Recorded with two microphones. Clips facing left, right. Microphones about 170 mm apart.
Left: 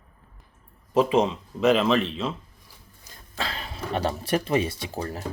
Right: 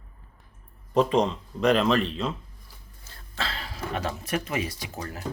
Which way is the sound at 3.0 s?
15° left (ahead or behind).